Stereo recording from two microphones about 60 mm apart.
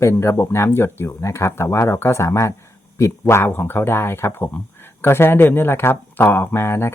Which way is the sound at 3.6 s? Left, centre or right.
Left.